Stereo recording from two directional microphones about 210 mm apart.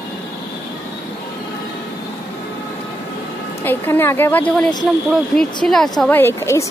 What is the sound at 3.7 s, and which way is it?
A woman's voice, 10° left (ahead or behind).